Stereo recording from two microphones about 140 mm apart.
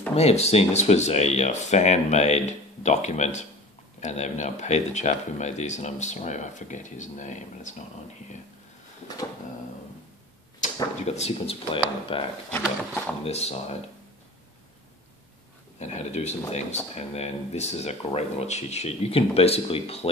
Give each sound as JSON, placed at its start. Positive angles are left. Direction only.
{"t": 0.1, "sound": "speech", "side_deg": 50}
{"t": 10.6, "sound": "speech", "side_deg": 50}
{"t": 12.4, "sound": "speech", "side_deg": 10}
{"t": 13.2, "sound": "speech", "side_deg": 50}
{"t": 15.8, "sound": "speech", "side_deg": 55}